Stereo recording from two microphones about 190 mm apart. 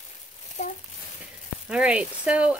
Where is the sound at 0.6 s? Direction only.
40° left (ahead or behind).